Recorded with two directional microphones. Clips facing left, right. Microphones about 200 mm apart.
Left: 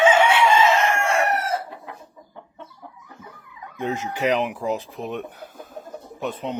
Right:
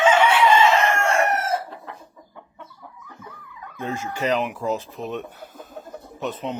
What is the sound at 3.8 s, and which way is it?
Speech, 20° left (ahead or behind).